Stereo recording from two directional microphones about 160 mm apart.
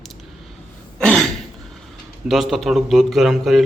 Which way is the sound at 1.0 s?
5° left (ahead or behind).